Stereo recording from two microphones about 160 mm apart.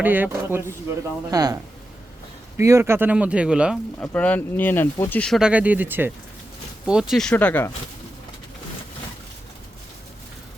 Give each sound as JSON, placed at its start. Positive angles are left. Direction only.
{"t": 0.0, "sound": "speech", "side_deg": -10}
{"t": 1.3, "sound": "speech", "side_deg": -25}
{"t": 2.6, "sound": "speech", "side_deg": -20}
{"t": 4.0, "sound": "speech", "side_deg": 10}
{"t": 5.4, "sound": "speech", "side_deg": -10}